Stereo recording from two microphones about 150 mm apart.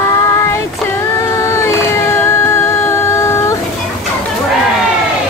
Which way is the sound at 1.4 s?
20° left (ahead or behind).